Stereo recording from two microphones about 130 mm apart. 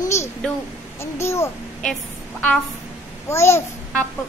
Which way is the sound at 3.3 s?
20° left (ahead or behind).